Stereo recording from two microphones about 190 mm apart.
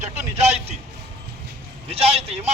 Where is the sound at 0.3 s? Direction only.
35° right (ahead or behind).